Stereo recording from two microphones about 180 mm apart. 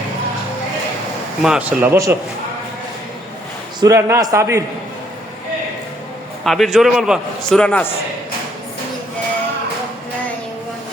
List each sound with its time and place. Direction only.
1.4 s a man's voice: 5° right (ahead or behind)
3.8 s a man's voice: 15° right (ahead or behind)
6.4 s a man's voice: centre (ahead or behind)